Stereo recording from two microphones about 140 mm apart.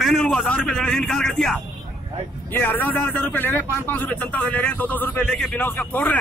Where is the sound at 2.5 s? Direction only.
15° left (ahead or behind).